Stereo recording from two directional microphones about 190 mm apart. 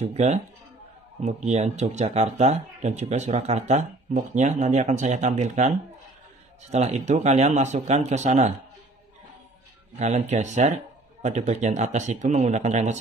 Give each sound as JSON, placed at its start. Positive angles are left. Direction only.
{"t": 0.0, "sound": "speech", "side_deg": -35}
{"t": 6.7, "sound": "speech", "side_deg": -35}
{"t": 9.9, "sound": "speech", "side_deg": -35}